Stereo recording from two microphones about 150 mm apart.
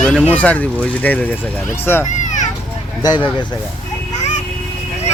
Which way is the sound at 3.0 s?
30° left (ahead or behind).